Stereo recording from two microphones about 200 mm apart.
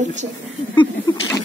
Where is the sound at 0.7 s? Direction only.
20° left (ahead or behind).